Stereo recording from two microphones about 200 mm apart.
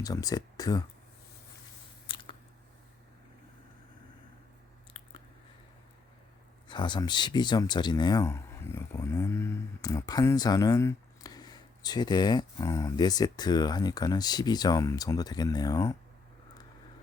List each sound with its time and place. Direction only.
0.0 s speech: 15° left (ahead or behind)
2.0 s chewing: 25° left (ahead or behind)
4.9 s chewing: 25° left (ahead or behind)
6.7 s speech: 25° left (ahead or behind)